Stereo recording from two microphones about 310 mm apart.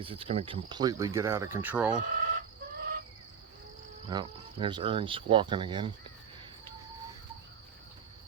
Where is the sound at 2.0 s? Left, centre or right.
Right.